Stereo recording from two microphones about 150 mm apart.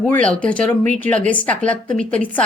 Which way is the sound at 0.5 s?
60° right (ahead or behind).